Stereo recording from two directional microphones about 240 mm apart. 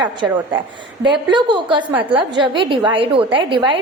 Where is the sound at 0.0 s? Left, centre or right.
Centre.